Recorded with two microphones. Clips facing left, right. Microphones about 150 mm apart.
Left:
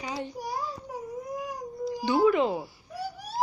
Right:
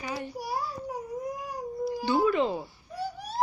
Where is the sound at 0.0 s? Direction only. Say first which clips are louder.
Left 1 dB; 20° left (ahead or behind).